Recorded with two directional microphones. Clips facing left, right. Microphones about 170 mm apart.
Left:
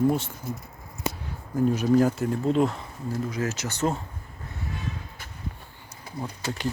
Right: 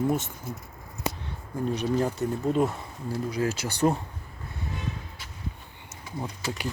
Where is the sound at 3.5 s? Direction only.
10° right (ahead or behind).